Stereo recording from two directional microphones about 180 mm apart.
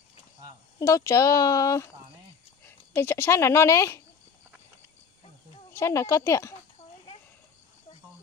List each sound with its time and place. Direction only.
0.7 s speech: 15° left (ahead or behind)
5.7 s speech: 15° left (ahead or behind)